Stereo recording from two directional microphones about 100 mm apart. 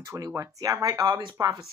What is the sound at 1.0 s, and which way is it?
Speech, 55° right (ahead or behind).